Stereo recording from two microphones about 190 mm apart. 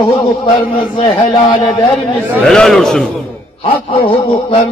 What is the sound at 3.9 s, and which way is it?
Speech, 30° left (ahead or behind).